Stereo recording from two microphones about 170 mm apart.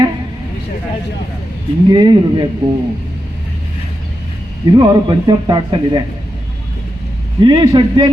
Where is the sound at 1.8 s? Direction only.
25° right (ahead or behind).